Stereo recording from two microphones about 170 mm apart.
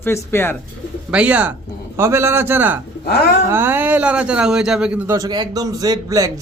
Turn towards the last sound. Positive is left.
turn(degrees=-20)  # may be behind; listen again after turning